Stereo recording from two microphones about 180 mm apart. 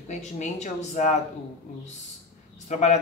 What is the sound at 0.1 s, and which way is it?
Speech, 40° left (ahead or behind).